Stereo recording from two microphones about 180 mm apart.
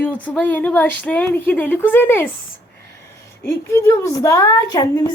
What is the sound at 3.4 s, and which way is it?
A woman's voice, 15° left (ahead or behind).